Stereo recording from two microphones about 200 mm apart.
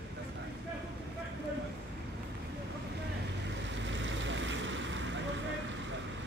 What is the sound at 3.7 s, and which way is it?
Vehicle, 65° right (ahead or behind).